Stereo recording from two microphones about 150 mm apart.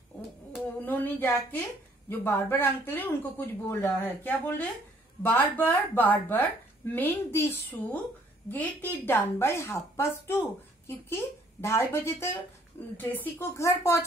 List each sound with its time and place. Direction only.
0.8 s speech: 10° left (ahead or behind)